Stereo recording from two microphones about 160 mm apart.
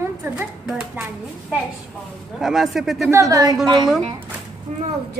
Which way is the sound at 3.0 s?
20° right (ahead or behind).